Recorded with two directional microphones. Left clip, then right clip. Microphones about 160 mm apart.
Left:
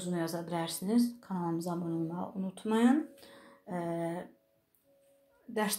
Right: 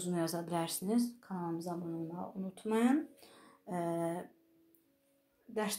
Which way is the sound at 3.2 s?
20° right (ahead or behind).